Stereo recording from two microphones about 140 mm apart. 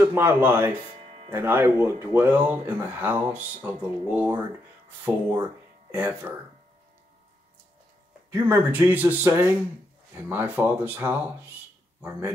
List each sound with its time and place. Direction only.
0.0 s speech: 15° right (ahead or behind)
1.0 s music: 50° right (ahead or behind)
1.3 s speech: 15° right (ahead or behind)
8.3 s speech: 15° right (ahead or behind)